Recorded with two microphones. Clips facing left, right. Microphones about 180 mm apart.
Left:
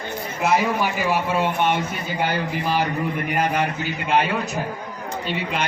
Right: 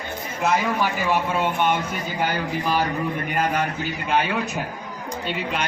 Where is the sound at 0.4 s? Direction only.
10° left (ahead or behind).